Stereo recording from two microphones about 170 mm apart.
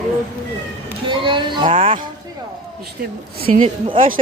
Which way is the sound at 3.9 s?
55° right (ahead or behind).